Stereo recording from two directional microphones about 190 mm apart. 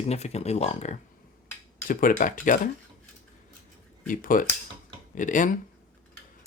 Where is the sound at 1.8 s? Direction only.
45° left (ahead or behind).